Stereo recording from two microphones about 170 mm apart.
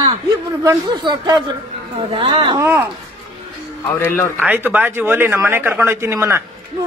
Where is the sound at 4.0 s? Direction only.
10° left (ahead or behind).